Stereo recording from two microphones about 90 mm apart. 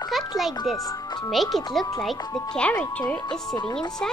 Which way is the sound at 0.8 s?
50° left (ahead or behind).